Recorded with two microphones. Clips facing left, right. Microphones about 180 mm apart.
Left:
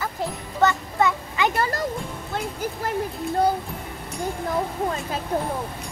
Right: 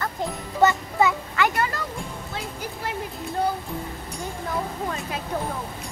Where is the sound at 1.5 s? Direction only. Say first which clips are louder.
Left 2 dB; 35° left (ahead or behind).